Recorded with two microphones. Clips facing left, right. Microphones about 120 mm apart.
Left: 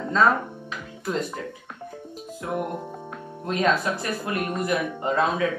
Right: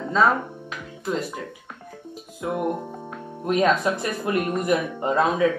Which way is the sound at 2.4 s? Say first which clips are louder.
Right 3 dB; 15° right (ahead or behind).